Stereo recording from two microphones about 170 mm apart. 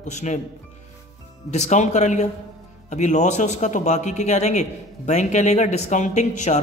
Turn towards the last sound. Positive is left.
turn(degrees=45)  # may be behind; listen again after turning